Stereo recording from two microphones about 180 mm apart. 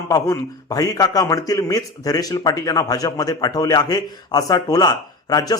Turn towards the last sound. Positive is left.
turn(degrees=20)  # may be behind; listen again after turning